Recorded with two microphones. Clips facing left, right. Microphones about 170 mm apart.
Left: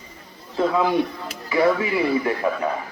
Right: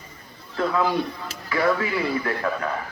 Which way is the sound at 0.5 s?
20° left (ahead or behind).